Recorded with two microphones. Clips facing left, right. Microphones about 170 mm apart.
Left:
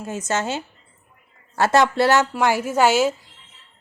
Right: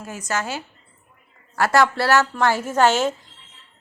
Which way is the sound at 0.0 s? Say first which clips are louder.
Left 3 dB; 25° left (ahead or behind).